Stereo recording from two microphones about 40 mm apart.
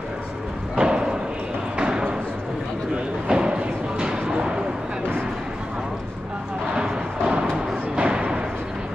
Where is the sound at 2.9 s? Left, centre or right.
Right.